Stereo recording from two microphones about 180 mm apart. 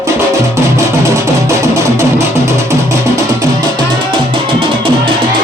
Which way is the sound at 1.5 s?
15° right (ahead or behind).